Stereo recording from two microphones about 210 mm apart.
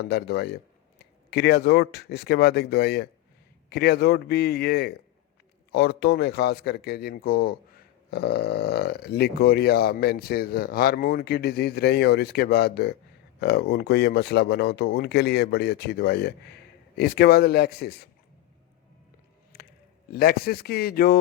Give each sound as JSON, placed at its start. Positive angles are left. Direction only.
{"t": 0.1, "sound": "speech", "side_deg": 50}
{"t": 20.1, "sound": "speech", "side_deg": 50}